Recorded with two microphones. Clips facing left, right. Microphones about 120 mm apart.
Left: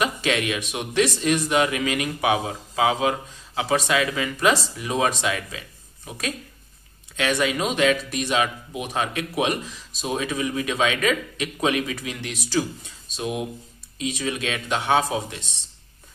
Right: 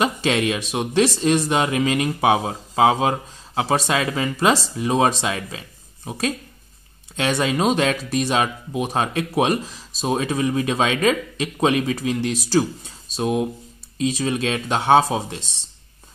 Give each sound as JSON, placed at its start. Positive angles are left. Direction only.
{"t": 0.0, "sound": "speech", "side_deg": -30}